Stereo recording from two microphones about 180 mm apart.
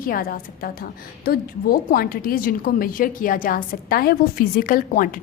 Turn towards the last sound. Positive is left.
turn(degrees=50)  # may be behind; listen again after turning